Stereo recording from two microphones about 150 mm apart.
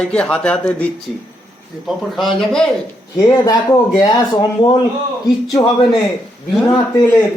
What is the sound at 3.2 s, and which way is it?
Speech, 25° left (ahead or behind).